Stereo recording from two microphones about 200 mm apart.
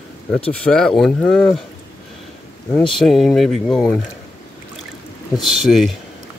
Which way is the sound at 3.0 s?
Centre (ahead or behind).